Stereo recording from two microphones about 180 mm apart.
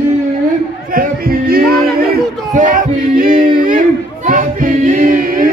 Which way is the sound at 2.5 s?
45° right (ahead or behind).